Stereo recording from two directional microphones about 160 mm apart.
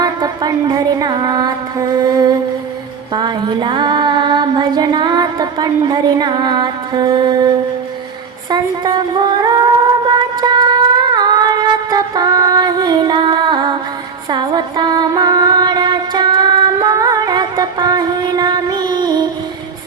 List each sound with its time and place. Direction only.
0.0 s music: 25° right (ahead or behind)
2.0 s mantra: 25° right (ahead or behind)
3.2 s a sound: 25° right (ahead or behind)
8.4 s speech: 25° right (ahead or behind)
10.1 s singing: 25° right (ahead or behind)
14.3 s music: 30° right (ahead or behind)